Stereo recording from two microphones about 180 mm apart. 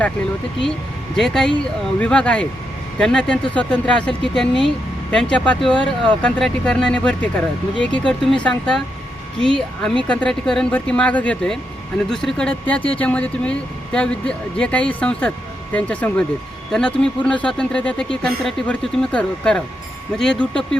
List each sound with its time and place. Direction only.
1.1 s speech: centre (ahead or behind)